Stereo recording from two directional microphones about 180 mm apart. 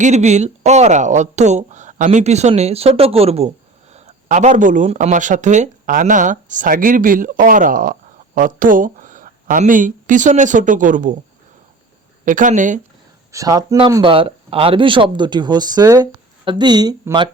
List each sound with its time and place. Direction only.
0.0 s a woman's voice: 40° right (ahead or behind)
12.2 s speech: 45° right (ahead or behind)
13.3 s speech: 20° right (ahead or behind)